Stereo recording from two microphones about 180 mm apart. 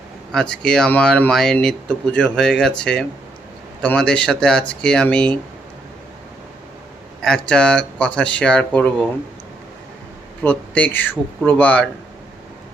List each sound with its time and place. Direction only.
0.3 s speech: 5° left (ahead or behind)
7.2 s speech: 5° left (ahead or behind)
10.4 s speech: 5° left (ahead or behind)